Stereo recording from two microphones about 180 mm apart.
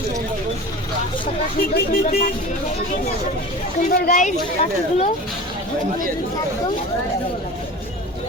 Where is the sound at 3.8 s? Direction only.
55° left (ahead or behind).